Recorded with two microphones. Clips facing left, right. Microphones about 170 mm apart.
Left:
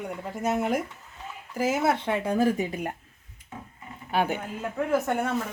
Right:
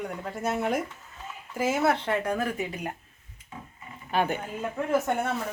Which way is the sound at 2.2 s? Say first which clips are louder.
Left 5 dB; 30° left (ahead or behind).